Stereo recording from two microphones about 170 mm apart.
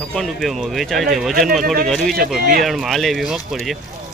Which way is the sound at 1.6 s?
60° right (ahead or behind).